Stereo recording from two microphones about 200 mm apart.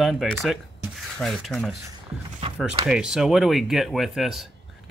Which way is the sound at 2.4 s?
25° right (ahead or behind).